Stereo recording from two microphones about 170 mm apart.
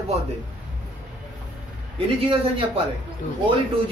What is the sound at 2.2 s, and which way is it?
Speech, 30° right (ahead or behind).